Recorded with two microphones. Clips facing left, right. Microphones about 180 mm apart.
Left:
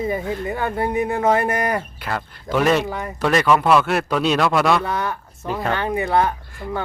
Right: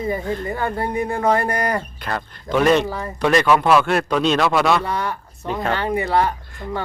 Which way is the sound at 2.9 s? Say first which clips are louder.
Even; 20° left (ahead or behind).